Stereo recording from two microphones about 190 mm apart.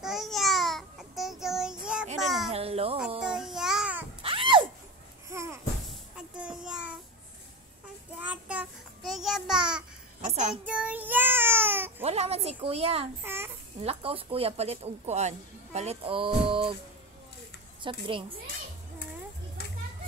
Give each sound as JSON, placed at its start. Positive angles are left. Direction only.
{"t": 0.0, "sound": "child singing", "side_deg": 0}
{"t": 2.2, "sound": "a sound", "side_deg": 0}
{"t": 2.5, "sound": "a sound", "side_deg": -30}
{"t": 3.2, "sound": "child singing", "side_deg": -5}
{"t": 4.2, "sound": "a sound", "side_deg": -30}
{"t": 5.3, "sound": "babbling", "side_deg": -15}
{"t": 6.1, "sound": "child singing", "side_deg": -5}
{"t": 8.2, "sound": "child singing", "side_deg": -10}
{"t": 10.2, "sound": "child singing", "side_deg": -40}
{"t": 10.7, "sound": "child singing", "side_deg": -5}
{"t": 12.0, "sound": "a sound", "side_deg": -35}
{"t": 13.2, "sound": "babbling", "side_deg": -10}
{"t": 13.7, "sound": "speech", "side_deg": -30}
{"t": 17.8, "sound": "a woman's voice", "side_deg": -25}